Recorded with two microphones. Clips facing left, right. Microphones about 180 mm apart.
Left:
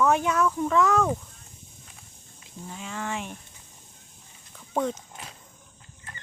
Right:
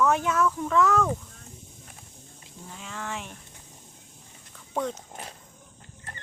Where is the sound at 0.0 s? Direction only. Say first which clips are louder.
Left 1 dB; centre (ahead or behind).